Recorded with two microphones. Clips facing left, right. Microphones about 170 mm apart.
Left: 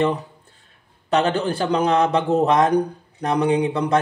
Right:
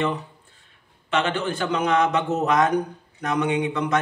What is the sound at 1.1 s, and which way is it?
A man's voice, 35° left (ahead or behind).